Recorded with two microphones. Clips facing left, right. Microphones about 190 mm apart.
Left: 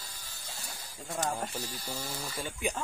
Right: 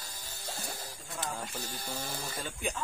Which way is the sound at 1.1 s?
45° left (ahead or behind).